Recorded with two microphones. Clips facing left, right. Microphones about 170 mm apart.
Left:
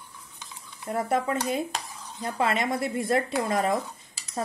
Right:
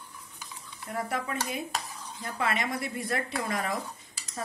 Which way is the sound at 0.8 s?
25° left (ahead or behind).